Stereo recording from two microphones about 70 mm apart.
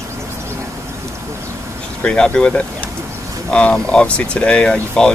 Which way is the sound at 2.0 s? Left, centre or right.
Centre.